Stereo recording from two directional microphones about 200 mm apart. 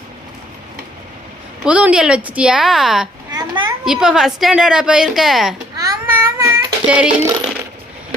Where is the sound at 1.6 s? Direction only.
5° right (ahead or behind).